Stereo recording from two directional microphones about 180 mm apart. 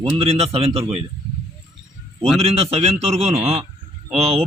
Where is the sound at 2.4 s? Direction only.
35° right (ahead or behind).